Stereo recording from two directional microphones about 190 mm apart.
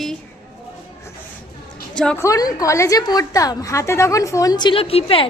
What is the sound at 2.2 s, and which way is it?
A woman's voice, 20° left (ahead or behind).